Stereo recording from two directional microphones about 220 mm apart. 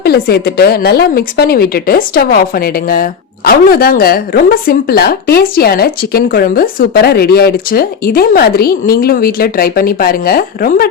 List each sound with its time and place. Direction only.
0.0 s a woman's voice: 45° left (ahead or behind)